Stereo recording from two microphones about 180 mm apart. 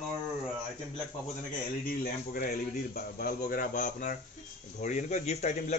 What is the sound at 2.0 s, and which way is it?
A man's voice, 50° left (ahead or behind).